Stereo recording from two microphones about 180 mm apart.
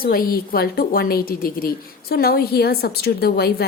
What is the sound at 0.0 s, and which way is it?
A woman's voice, 55° left (ahead or behind).